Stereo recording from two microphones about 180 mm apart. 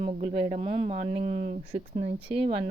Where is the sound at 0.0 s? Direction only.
35° right (ahead or behind).